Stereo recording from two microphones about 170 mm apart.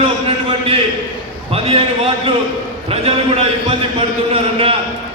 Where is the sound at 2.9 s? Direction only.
35° right (ahead or behind).